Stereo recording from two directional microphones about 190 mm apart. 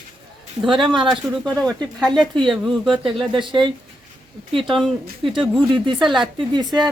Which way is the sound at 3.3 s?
25° right (ahead or behind).